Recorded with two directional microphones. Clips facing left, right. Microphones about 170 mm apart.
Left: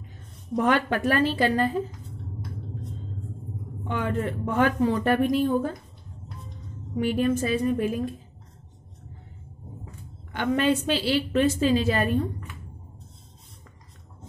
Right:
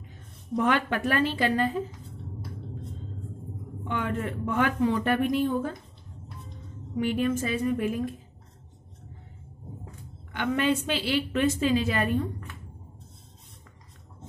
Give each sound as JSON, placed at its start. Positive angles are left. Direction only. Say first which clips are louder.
{"t": 0.6, "sound": "speech", "louder": "left 2 dB", "side_deg": 40}
{"t": 3.8, "sound": "speech", "louder": "left 2 dB", "side_deg": 35}
{"t": 7.0, "sound": "speech", "louder": "left 2 dB", "side_deg": 35}
{"t": 10.3, "sound": "speech", "louder": "left 3 dB", "side_deg": 35}